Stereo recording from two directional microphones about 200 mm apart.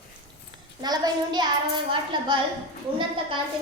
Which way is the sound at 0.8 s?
20° right (ahead or behind).